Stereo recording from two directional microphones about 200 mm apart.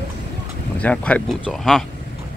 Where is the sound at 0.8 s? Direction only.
5° left (ahead or behind).